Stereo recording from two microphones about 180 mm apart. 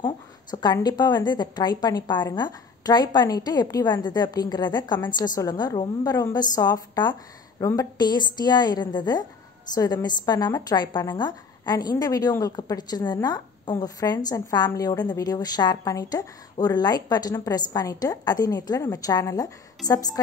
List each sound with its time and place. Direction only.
0.0 s a woman's voice: 25° left (ahead or behind)